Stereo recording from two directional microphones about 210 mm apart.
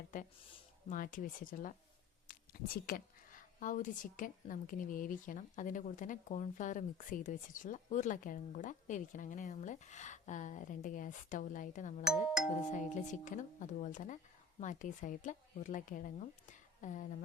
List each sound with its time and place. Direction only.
0.9 s a woman's voice: 40° left (ahead or behind)
12.0 s speech: 5° right (ahead or behind)
12.7 s a woman's voice: 35° left (ahead or behind)